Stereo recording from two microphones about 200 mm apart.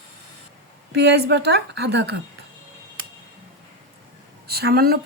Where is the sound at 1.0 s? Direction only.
55° right (ahead or behind).